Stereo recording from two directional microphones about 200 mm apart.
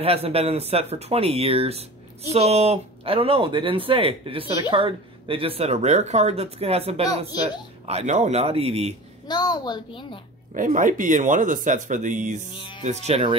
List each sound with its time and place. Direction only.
0.0 s speech: 30° right (ahead or behind)
9.3 s a woman's voice: 20° left (ahead or behind)
10.5 s speech: 40° right (ahead or behind)
12.5 s speech: 25° left (ahead or behind)
12.8 s speech: 35° right (ahead or behind)